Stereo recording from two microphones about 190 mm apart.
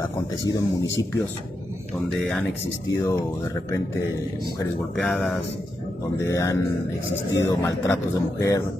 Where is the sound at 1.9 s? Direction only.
Centre (ahead or behind).